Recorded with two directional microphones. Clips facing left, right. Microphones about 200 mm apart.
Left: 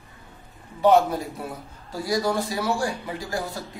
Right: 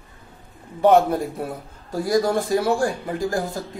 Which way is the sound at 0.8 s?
55° right (ahead or behind).